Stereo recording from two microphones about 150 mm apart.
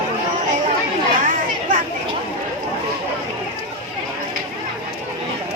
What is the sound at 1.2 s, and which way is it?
Chatter, 65° right (ahead or behind).